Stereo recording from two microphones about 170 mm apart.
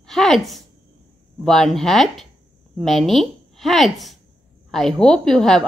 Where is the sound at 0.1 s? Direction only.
Centre (ahead or behind).